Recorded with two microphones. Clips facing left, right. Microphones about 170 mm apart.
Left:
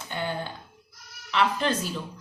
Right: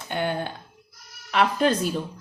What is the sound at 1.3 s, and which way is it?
Speech, 45° right (ahead or behind).